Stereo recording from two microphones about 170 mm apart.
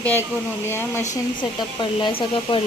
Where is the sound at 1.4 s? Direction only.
25° left (ahead or behind).